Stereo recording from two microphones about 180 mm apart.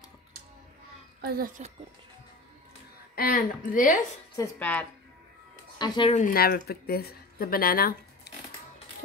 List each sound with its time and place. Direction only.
1.6 s speech: 40° right (ahead or behind)
3.2 s a woman's voice: 55° left (ahead or behind)
4.4 s speech: 10° left (ahead or behind)
5.8 s speech: 30° left (ahead or behind)
6.1 s speech: 50° left (ahead or behind)